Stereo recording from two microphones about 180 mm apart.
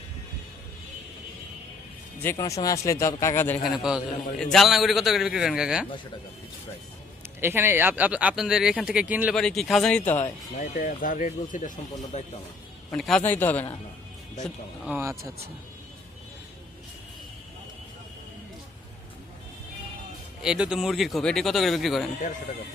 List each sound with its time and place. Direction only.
2.2 s speech: 15° left (ahead or behind)
3.7 s a man's voice: 5° right (ahead or behind)
7.4 s a man's voice: 10° right (ahead or behind)
10.1 s speech: 15° left (ahead or behind)
10.6 s speech: 50° left (ahead or behind)
12.9 s speech: 5° left (ahead or behind)
14.4 s speech: 10° right (ahead or behind)
20.4 s a man's voice: 5° right (ahead or behind)